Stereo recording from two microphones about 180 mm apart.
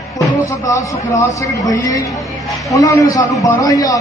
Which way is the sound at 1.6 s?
20° left (ahead or behind).